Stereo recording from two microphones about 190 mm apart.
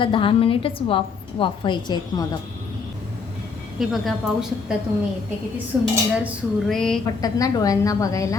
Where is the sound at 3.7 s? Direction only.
Centre (ahead or behind).